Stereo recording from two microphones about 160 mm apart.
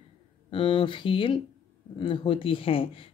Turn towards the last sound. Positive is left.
turn(degrees=35)  # may be behind; listen again after turning